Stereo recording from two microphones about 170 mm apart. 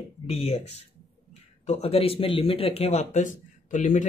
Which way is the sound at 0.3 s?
35° left (ahead or behind).